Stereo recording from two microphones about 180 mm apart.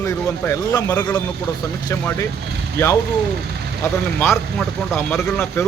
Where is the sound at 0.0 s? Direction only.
15° left (ahead or behind).